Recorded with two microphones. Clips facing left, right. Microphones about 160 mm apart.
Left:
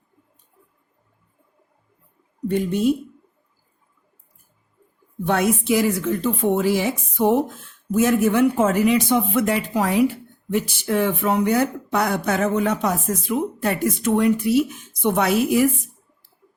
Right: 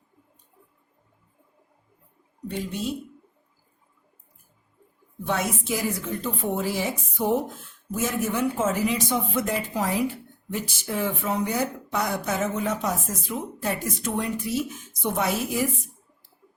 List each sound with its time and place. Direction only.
2.5 s a woman's voice: 55° left (ahead or behind)
5.2 s a woman's voice: 60° left (ahead or behind)
6.2 s a woman's voice: 80° left
7.9 s speech: 70° left (ahead or behind)